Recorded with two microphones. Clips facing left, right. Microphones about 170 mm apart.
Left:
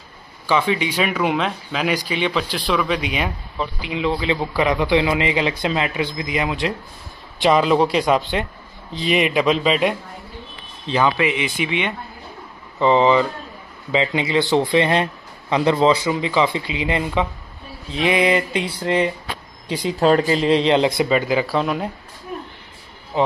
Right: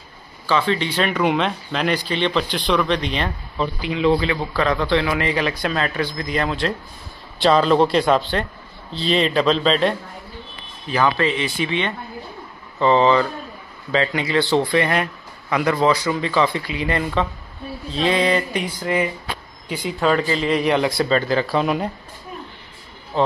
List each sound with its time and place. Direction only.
0.5 s a man's voice: 15° left (ahead or behind)
20.0 s a man's voice: 40° left (ahead or behind); by 21.5 s 10° left (ahead or behind)
21.5 s speech: centre (ahead or behind)
23.1 s speech: 15° left (ahead or behind)